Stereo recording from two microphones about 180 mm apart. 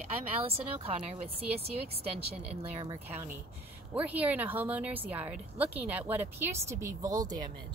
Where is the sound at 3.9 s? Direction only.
10° right (ahead or behind).